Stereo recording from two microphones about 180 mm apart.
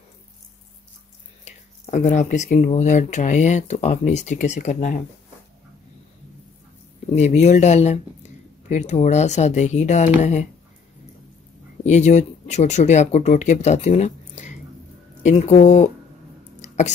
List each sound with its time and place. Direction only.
1.4 s speech: 40° left (ahead or behind)
7.2 s speech: 40° left (ahead or behind)
11.8 s speech: 40° left (ahead or behind)
16.6 s a sound: 40° left (ahead or behind)